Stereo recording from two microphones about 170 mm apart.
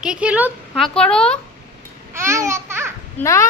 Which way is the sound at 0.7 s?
5° left (ahead or behind).